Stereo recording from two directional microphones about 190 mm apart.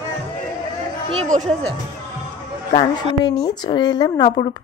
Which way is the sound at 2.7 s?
20° left (ahead or behind).